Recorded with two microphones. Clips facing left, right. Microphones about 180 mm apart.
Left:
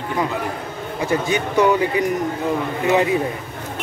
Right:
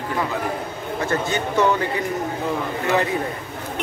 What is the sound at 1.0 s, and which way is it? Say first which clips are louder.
Speech: left 3 dB; 15° left (ahead or behind).